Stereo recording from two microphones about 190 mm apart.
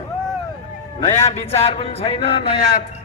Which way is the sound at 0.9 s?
30° left (ahead or behind).